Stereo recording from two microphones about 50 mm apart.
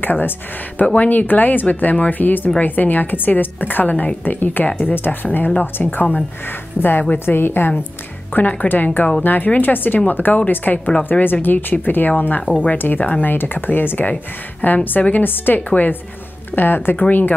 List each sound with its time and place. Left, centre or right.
0.0 s speech: left
4.6 s speech: left
4.9 s a woman's voice: left
8.3 s a woman's voice: left
16.9 s speech: left